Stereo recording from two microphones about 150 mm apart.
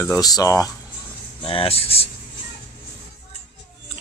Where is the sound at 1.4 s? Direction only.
35° left (ahead or behind).